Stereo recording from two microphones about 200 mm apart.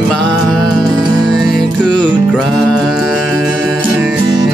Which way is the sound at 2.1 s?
Centre (ahead or behind).